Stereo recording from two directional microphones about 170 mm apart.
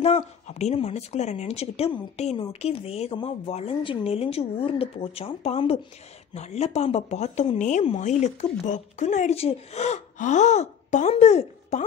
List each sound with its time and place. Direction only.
0.0 s speech: 40° left (ahead or behind)